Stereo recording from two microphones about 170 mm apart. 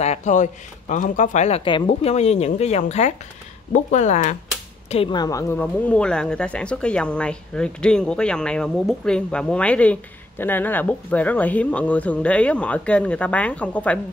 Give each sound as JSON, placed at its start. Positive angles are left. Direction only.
{"t": 0.0, "sound": "speech", "side_deg": 40}
{"t": 4.8, "sound": "speech", "side_deg": 35}